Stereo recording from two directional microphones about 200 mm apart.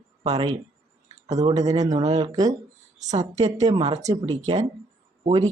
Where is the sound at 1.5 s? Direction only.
20° right (ahead or behind).